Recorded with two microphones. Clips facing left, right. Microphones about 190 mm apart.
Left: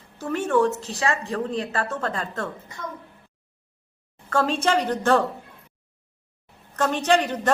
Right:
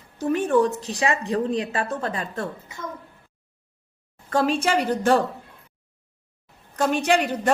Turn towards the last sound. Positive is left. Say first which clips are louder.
# even
turn(degrees=-10)  # may be behind; listen again after turning